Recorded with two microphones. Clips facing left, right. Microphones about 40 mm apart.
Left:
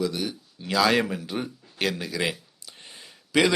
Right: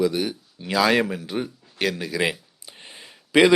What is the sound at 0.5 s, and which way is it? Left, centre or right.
Speech, centre.